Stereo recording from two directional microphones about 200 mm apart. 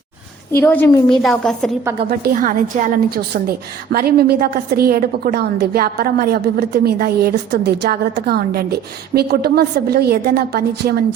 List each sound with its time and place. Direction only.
0.5 s a woman's voice: 10° left (ahead or behind)
2.0 s a woman's voice: 40° right (ahead or behind)